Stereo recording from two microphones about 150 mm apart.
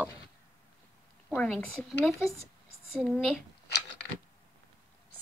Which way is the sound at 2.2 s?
20° left (ahead or behind).